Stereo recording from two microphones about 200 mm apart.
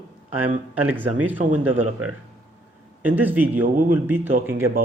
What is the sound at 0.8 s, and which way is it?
Speech, 10° right (ahead or behind).